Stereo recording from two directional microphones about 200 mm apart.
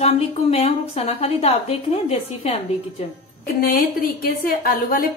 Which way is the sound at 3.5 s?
45° left (ahead or behind).